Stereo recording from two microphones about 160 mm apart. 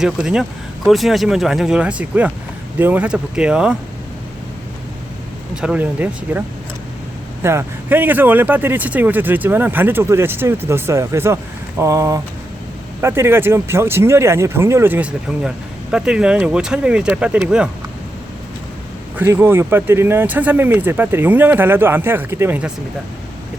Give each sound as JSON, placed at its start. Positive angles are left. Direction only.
{"t": 0.0, "sound": "speech", "side_deg": -5}
{"t": 5.5, "sound": "speech", "side_deg": -5}
{"t": 7.4, "sound": "speech", "side_deg": -15}
{"t": 19.1, "sound": "speech", "side_deg": -15}